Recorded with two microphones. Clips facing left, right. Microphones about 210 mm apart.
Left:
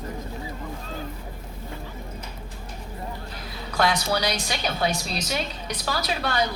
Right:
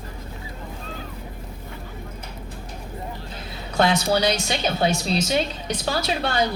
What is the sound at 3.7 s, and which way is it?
Speech, 25° right (ahead or behind).